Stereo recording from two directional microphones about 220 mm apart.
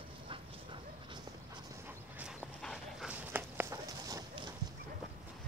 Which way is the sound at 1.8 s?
5° right (ahead or behind).